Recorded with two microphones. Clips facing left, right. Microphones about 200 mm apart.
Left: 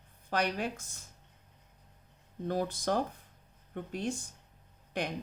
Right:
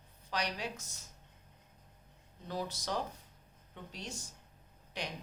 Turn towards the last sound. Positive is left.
turn(degrees=55)  # may be behind; listen again after turning